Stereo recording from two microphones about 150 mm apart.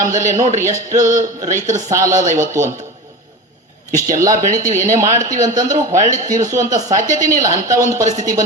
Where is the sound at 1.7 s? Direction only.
20° right (ahead or behind).